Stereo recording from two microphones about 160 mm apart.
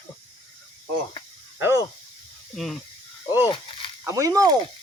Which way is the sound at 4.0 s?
20° right (ahead or behind).